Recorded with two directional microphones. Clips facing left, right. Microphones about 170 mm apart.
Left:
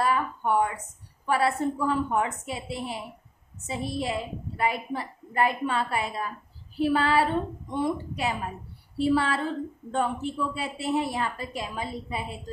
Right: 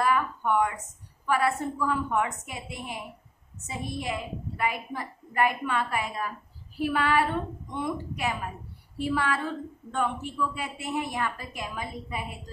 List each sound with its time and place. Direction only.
0.0 s a woman's voice: 30° left (ahead or behind)